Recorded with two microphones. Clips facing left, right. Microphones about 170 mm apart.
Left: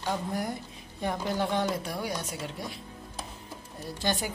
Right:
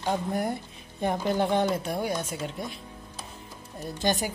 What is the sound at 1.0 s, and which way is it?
Speech, 20° right (ahead or behind).